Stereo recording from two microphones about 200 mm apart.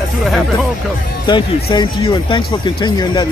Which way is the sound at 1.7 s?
25° left (ahead or behind).